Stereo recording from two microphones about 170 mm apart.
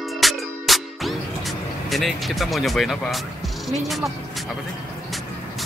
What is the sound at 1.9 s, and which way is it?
Speech, centre (ahead or behind).